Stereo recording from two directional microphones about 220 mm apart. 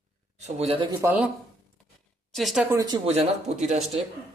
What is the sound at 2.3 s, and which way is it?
Speech, centre (ahead or behind).